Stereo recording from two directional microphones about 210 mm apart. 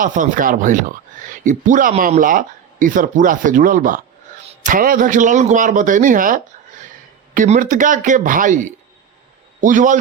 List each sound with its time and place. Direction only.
0.0 s a man's voice: 40° right (ahead or behind)